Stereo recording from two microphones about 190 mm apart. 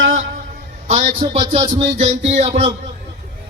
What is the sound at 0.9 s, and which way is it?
Music, 45° right (ahead or behind).